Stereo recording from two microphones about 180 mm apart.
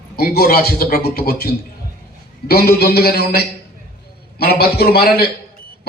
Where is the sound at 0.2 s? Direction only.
55° left (ahead or behind).